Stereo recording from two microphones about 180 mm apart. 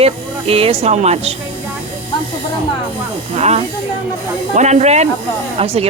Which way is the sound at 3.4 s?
40° right (ahead or behind).